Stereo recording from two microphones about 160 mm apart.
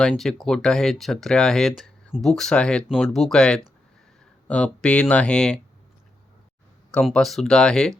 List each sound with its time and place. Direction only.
0.0 s speech: 5° left (ahead or behind)
6.9 s speech: 5° left (ahead or behind)